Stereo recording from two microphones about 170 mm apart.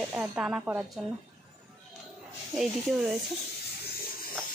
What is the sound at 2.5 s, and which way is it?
Speech, centre (ahead or behind).